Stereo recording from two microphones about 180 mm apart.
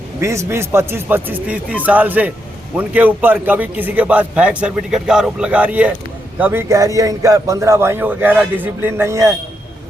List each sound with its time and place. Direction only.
0.2 s a man's voice: 15° right (ahead or behind)